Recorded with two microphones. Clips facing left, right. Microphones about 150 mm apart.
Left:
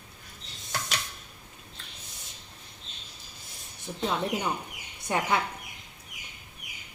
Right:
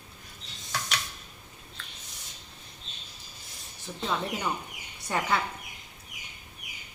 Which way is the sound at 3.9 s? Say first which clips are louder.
Left 2 dB; 20° left (ahead or behind).